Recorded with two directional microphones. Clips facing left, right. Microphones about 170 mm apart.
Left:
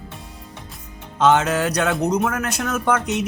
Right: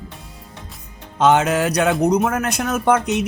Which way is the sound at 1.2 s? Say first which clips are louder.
Right 2 dB; 15° right (ahead or behind).